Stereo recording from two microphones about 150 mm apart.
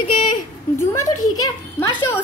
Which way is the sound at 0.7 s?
20° left (ahead or behind).